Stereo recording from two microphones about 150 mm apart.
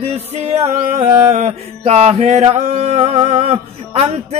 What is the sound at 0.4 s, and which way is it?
Mantra, 50° right (ahead or behind).